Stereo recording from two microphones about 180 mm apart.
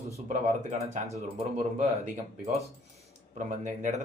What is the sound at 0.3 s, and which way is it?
Speech, 45° right (ahead or behind).